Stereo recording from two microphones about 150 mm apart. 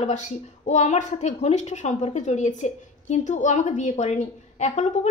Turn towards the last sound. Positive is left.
turn(degrees=50)  # may be behind; listen again after turning